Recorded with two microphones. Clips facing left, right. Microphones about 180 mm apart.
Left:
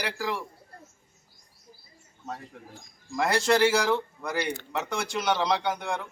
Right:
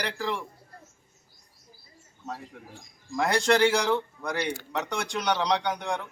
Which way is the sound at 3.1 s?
Centre (ahead or behind).